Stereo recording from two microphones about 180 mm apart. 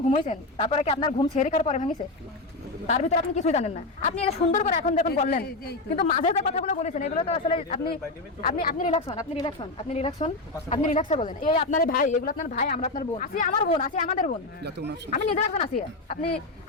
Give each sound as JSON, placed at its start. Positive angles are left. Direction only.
{"t": 0.1, "sound": "a woman's voice", "side_deg": 40}
{"t": 0.9, "sound": "speech", "side_deg": 25}
{"t": 1.4, "sound": "a woman's voice", "side_deg": 40}
{"t": 8.4, "sound": "speech", "side_deg": 50}
{"t": 8.9, "sound": "a woman's voice", "side_deg": 35}
{"t": 14.6, "sound": "speech", "side_deg": -65}
{"t": 15.1, "sound": "a woman's voice", "side_deg": 40}